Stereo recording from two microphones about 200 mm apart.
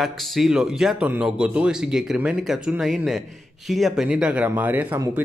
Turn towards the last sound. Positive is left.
turn(degrees=-10)  # may be behind; listen again after turning